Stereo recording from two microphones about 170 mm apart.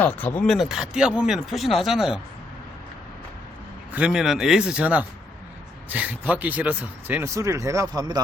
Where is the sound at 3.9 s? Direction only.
5° right (ahead or behind).